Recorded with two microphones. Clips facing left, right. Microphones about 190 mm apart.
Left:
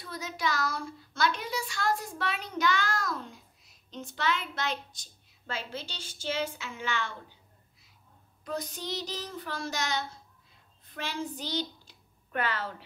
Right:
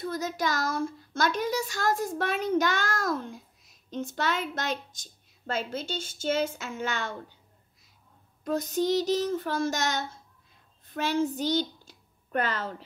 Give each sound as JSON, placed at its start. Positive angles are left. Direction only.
{"t": 0.0, "sound": "speech", "side_deg": -45}
{"t": 8.5, "sound": "a woman's voice", "side_deg": -45}